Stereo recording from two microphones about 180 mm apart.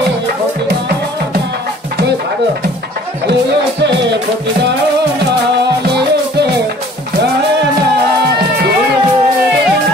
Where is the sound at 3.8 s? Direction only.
75° right (ahead or behind).